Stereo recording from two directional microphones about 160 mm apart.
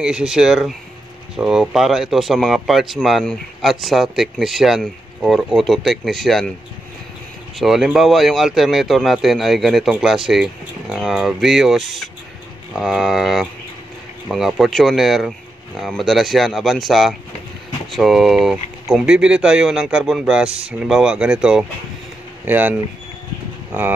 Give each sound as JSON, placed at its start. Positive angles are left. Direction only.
{"t": 0.0, "sound": "speech", "side_deg": -5}
{"t": 7.5, "sound": "speech", "side_deg": 0}